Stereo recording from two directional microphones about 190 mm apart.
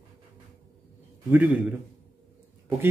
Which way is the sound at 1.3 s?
10° right (ahead or behind).